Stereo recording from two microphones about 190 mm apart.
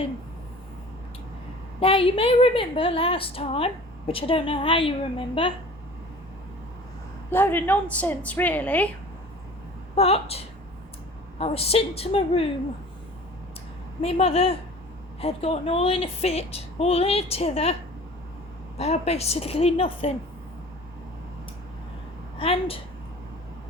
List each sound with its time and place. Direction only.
1.8 s a woman's voice: 30° left (ahead or behind)
7.3 s a woman's voice: 10° left (ahead or behind)
9.9 s a woman's voice: 30° left (ahead or behind)
14.0 s a woman's voice: 30° left (ahead or behind)
18.8 s a woman's voice: 35° left (ahead or behind)
22.4 s a woman's voice: 30° left (ahead or behind)